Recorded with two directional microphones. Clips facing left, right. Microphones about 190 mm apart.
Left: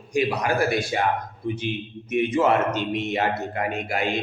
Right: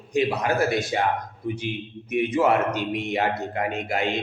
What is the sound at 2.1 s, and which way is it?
A man's voice, 10° right (ahead or behind).